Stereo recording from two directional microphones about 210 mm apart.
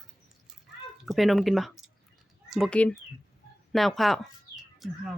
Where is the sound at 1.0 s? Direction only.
Centre (ahead or behind).